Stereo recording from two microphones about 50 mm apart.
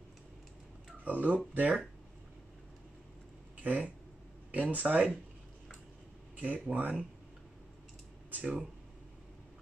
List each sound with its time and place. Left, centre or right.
1.0 s speech: right
3.6 s speech: right
6.3 s speech: right
8.3 s speech: right